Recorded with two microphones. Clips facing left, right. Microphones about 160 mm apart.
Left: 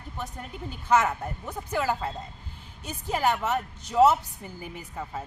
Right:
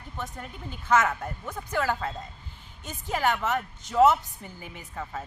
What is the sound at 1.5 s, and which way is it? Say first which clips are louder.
Speech: even; 15° left (ahead or behind).